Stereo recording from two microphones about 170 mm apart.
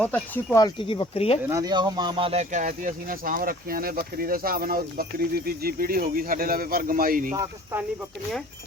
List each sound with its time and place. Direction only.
0.0 s speech: 10° left (ahead or behind)
0.5 s speech: 25° left (ahead or behind)
1.5 s speech: 20° right (ahead or behind); by 7.3 s 55° right (ahead or behind)
7.3 s speech: 15° right (ahead or behind)